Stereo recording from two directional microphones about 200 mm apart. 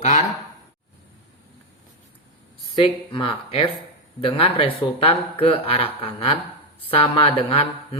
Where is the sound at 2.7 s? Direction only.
25° left (ahead or behind).